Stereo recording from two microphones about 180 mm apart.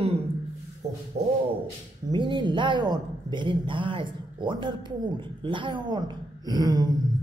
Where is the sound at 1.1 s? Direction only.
35° right (ahead or behind).